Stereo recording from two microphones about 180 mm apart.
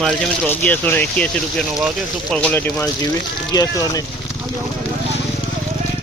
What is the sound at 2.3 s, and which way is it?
Speech, 10° left (ahead or behind).